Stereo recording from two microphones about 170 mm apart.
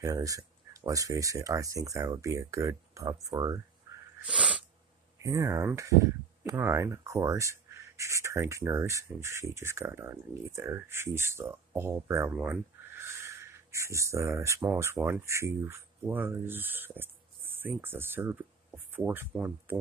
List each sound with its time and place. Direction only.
0.0 s speech: 20° right (ahead or behind)
4.2 s sneeze: 10° right (ahead or behind)
5.2 s speech: 20° right (ahead or behind)